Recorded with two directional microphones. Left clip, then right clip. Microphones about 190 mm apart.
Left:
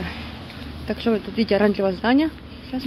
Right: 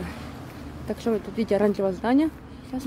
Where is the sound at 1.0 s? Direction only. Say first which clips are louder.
Left 4 dB; 15° right (ahead or behind).